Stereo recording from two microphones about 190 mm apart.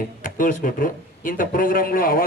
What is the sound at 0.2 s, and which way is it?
A man's voice, 45° left (ahead or behind).